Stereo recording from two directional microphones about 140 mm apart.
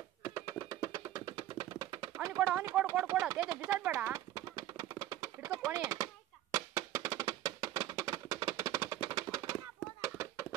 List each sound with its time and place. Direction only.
0.2 s music: 25° right (ahead or behind)
2.2 s speech: 20° right (ahead or behind)
4.1 s a sound: 30° right (ahead or behind)
6.5 s music: 25° right (ahead or behind)